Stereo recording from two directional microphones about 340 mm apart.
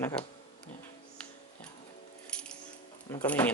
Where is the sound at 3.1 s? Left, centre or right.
Centre.